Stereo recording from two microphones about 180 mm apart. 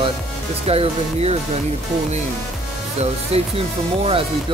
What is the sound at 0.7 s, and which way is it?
Speech, 35° right (ahead or behind).